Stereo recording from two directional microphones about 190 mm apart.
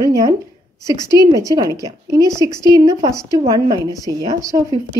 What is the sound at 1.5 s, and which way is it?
A woman's voice, 20° right (ahead or behind).